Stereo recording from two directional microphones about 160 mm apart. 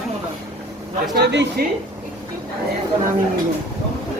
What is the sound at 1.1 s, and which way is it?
Speech, 90° right.